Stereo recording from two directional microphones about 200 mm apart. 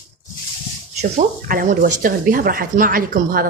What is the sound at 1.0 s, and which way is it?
Speech, 40° right (ahead or behind).